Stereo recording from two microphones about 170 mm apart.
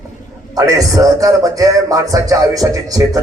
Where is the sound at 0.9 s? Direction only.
20° right (ahead or behind).